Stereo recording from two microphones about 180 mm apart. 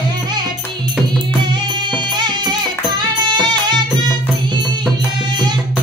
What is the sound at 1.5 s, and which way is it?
Music, 25° right (ahead or behind).